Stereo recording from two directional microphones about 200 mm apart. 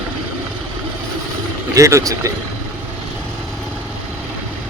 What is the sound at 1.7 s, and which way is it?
Speech, 15° right (ahead or behind).